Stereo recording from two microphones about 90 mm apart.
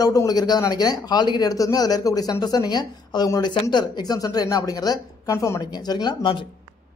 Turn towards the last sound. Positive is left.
turn(degrees=65)  # may be behind; listen again after turning